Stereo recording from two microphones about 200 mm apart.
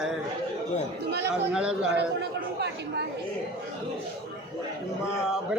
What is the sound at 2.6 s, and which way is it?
Speech, 55° right (ahead or behind).